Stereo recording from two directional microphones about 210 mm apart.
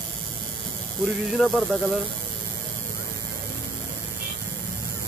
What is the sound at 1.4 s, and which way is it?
Speech, centre (ahead or behind).